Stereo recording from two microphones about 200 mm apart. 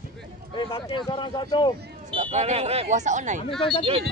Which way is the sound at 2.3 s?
35° right (ahead or behind).